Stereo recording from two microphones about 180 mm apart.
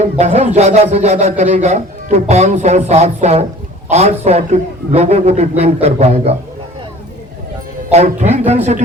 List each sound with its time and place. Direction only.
0.0 s speech: 35° right (ahead or behind)
7.9 s speech: 40° right (ahead or behind)